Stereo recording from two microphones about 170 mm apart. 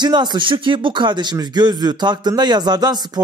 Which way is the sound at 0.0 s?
25° right (ahead or behind).